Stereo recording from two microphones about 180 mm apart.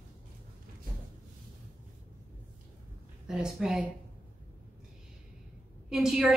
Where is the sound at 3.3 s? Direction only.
5° right (ahead or behind).